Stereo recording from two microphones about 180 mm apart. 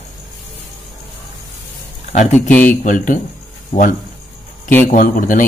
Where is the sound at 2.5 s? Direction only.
10° left (ahead or behind).